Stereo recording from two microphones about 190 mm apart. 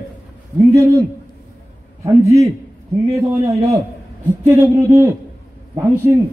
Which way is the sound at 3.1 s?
15° right (ahead or behind).